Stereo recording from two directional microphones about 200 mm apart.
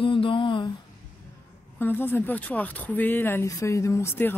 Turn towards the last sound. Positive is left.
turn(degrees=10)  # may be behind; listen again after turning